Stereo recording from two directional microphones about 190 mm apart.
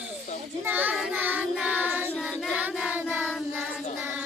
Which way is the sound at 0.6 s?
10° right (ahead or behind).